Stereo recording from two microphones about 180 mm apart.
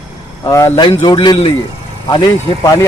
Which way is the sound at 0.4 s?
20° left (ahead or behind).